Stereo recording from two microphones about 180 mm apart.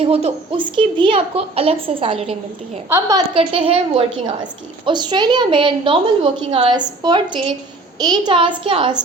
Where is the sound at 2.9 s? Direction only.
20° right (ahead or behind).